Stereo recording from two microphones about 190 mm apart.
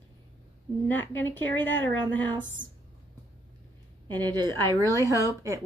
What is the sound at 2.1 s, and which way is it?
Speech, 80° right.